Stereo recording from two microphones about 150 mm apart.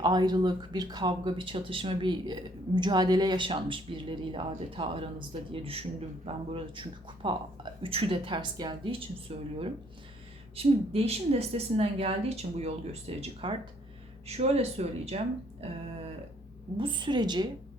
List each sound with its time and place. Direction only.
0.0 s speech: 25° right (ahead or behind)
10.5 s speech: 40° right (ahead or behind)
16.7 s speech: 35° right (ahead or behind)